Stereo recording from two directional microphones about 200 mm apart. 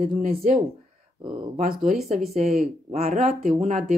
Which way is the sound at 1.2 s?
25° right (ahead or behind).